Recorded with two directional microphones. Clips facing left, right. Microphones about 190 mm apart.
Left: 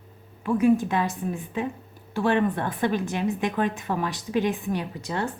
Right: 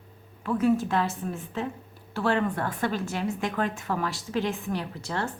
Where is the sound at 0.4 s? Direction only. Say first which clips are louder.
Left 3 dB; 15° left (ahead or behind).